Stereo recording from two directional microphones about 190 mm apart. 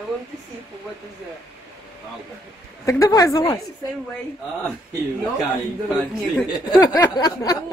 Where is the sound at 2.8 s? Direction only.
15° left (ahead or behind).